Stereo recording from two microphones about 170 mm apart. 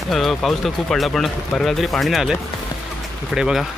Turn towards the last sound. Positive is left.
turn(degrees=-5)  # may be behind; listen again after turning